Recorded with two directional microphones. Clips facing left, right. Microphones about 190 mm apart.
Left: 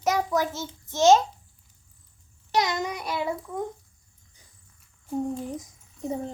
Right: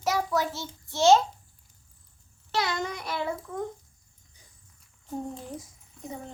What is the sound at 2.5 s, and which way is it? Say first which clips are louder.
A child's voice: left 3 dB; 20° left (ahead or behind).